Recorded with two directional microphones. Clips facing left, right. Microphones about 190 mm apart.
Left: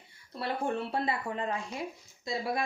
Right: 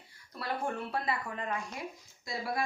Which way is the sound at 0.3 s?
25° left (ahead or behind).